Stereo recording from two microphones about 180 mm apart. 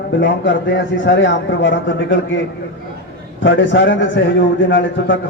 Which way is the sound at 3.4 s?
90° left.